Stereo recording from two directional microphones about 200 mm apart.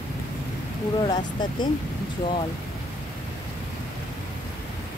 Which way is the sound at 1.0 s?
20° left (ahead or behind).